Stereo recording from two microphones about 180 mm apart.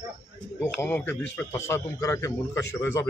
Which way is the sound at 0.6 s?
10° left (ahead or behind).